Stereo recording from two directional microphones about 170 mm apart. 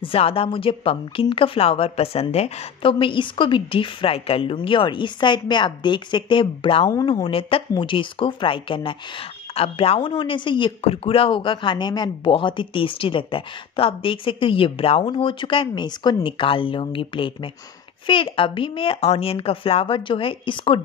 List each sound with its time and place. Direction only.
0.0 s speech: 35° left (ahead or behind)